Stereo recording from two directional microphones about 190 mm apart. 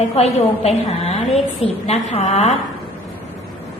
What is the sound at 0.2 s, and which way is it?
A woman's voice, 35° left (ahead or behind).